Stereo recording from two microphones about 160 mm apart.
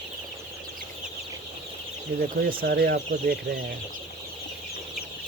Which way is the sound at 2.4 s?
70° right (ahead or behind).